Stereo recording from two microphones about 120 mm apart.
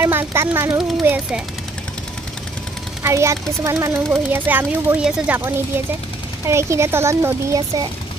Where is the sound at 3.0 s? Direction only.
25° right (ahead or behind).